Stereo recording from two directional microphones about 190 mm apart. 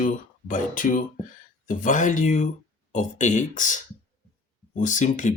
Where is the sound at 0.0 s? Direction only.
45° left (ahead or behind).